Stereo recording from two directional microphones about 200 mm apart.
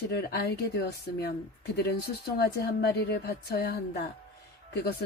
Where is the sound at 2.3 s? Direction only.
55° left (ahead or behind).